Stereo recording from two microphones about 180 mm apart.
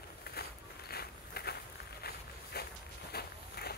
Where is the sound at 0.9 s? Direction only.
60° left (ahead or behind).